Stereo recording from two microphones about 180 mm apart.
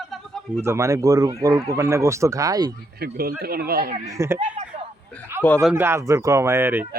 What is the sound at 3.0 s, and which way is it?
Speech, 55° right (ahead or behind).